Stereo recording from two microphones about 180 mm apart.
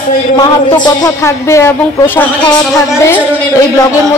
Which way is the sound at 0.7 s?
25° left (ahead or behind).